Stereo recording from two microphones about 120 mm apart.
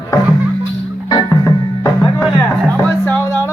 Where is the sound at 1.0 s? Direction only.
35° left (ahead or behind).